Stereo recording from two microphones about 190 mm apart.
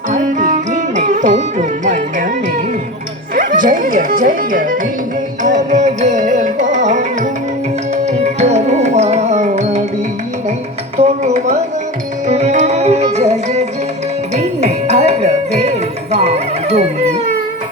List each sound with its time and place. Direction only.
0.1 s music: 40° right (ahead or behind)
3.3 s speech: 45° right (ahead or behind)
5.4 s music: 40° right (ahead or behind)
10.9 s music: 35° right (ahead or behind)